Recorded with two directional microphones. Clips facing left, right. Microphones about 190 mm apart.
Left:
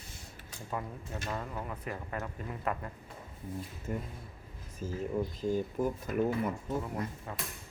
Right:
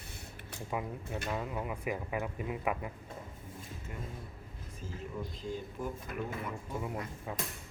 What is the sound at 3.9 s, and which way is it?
Speech, 45° left (ahead or behind).